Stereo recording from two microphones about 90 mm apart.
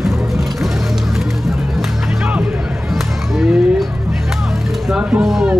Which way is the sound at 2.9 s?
5° right (ahead or behind).